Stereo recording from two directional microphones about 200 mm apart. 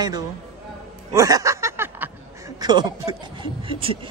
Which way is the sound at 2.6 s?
20° right (ahead or behind).